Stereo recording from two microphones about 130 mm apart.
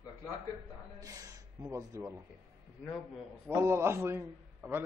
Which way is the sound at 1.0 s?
30° right (ahead or behind).